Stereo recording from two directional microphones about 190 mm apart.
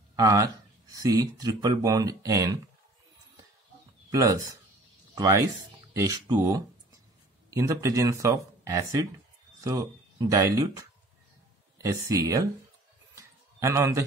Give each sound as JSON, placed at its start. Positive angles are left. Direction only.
{"t": 0.1, "sound": "speech", "side_deg": -20}
{"t": 4.1, "sound": "speech", "side_deg": -20}
{"t": 13.6, "sound": "speech", "side_deg": -15}